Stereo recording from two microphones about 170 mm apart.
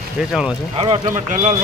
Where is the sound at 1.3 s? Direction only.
50° right (ahead or behind).